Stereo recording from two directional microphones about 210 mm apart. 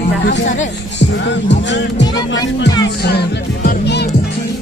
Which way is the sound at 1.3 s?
60° left (ahead or behind).